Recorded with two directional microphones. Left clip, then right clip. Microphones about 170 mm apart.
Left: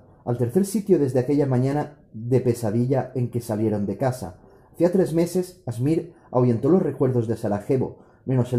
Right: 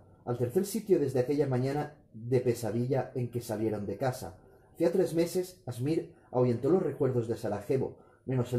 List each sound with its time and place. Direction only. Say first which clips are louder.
0.2 s speech: left 7 dB; 20° left (ahead or behind)